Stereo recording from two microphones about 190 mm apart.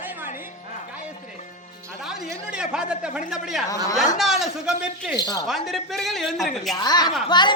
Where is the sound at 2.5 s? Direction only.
5° right (ahead or behind).